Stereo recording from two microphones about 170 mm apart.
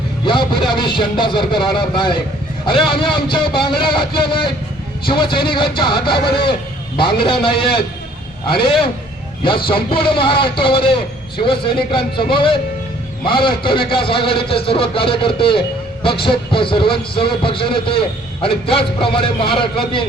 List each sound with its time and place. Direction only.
0.3 s a man's voice: 30° left (ahead or behind)